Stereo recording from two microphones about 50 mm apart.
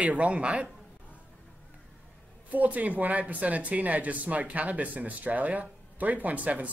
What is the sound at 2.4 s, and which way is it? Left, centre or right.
Speech, right.